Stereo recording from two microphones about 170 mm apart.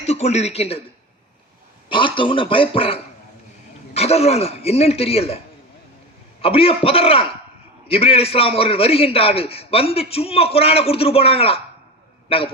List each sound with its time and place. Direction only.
0.0 s speech: 40° left (ahead or behind)
1.9 s a man's voice: 30° left (ahead or behind)
6.4 s a man's voice: 35° left (ahead or behind)